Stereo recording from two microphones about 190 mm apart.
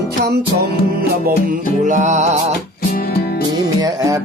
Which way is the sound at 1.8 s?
40° right (ahead or behind).